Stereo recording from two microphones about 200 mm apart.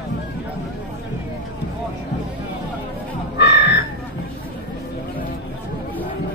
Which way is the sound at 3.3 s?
55° left (ahead or behind).